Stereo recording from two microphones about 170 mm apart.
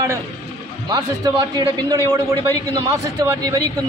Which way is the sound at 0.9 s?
20° right (ahead or behind).